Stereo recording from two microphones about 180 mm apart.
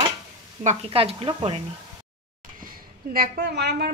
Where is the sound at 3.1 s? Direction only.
60° right (ahead or behind).